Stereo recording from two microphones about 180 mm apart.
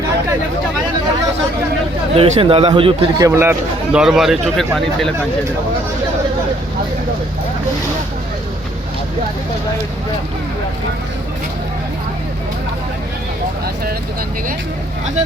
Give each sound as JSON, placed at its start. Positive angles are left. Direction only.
{"t": 2.1, "sound": "speech", "side_deg": -30}
{"t": 3.2, "sound": "a man's voice", "side_deg": -15}